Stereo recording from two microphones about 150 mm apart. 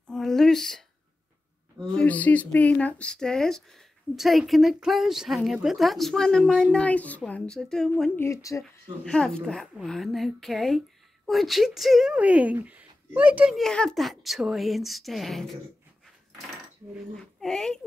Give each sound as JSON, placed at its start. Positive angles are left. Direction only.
{"t": 0.1, "sound": "a sound", "side_deg": 0}
{"t": 2.0, "sound": "a woman's voice", "side_deg": 10}
{"t": 8.2, "sound": "speech", "side_deg": 20}
{"t": 9.0, "sound": "a woman's voice", "side_deg": 5}
{"t": 13.6, "sound": "a woman's voice", "side_deg": 5}
{"t": 17.1, "sound": "a woman's voice", "side_deg": 5}